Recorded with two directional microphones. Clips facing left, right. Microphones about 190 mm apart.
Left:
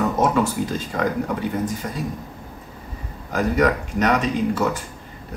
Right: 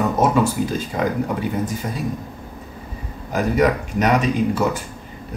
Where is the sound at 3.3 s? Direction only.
10° right (ahead or behind).